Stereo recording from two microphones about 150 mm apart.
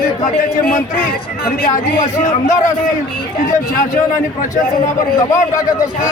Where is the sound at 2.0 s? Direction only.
55° left (ahead or behind).